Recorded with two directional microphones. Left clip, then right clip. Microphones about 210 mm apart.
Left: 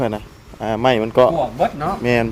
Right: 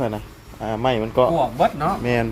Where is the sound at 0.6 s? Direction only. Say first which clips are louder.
Left 5 dB; 50° left (ahead or behind).